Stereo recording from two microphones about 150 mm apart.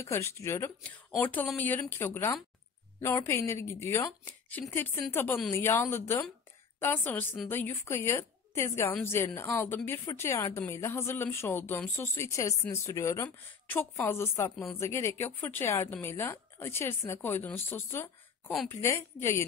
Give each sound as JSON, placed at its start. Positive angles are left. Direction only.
{"t": 0.0, "sound": "speech", "side_deg": 20}